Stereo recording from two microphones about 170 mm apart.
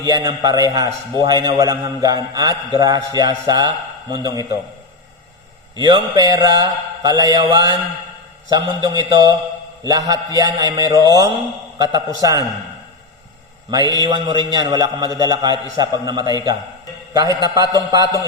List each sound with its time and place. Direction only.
0.0 s a man's voice: 20° right (ahead or behind)
5.7 s a man's voice: 25° right (ahead or behind)
13.7 s a man's voice: 25° right (ahead or behind)